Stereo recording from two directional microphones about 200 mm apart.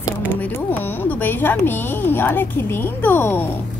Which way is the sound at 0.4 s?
10° left (ahead or behind).